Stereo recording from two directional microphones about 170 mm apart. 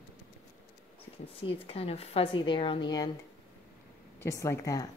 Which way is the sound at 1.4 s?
35° left (ahead or behind).